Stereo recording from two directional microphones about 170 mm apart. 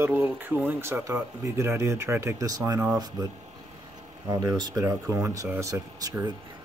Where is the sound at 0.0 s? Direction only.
10° right (ahead or behind).